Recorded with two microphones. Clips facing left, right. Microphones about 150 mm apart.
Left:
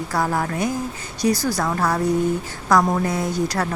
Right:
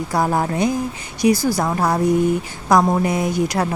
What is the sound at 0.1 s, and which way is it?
A woman's voice, 20° right (ahead or behind).